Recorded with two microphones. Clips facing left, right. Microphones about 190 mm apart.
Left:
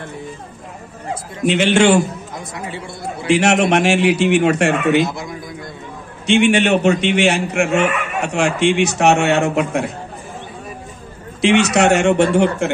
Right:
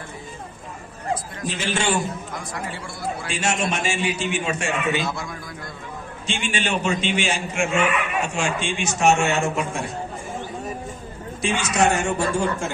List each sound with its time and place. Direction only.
1.5 s a man's voice: 75° left (ahead or behind)
2.3 s a man's voice: 25° left (ahead or behind)
3.3 s a man's voice: 70° left (ahead or behind)
5.0 s a man's voice: 20° left (ahead or behind)
6.2 s a man's voice: 65° left (ahead or behind)
11.4 s a man's voice: 70° left (ahead or behind)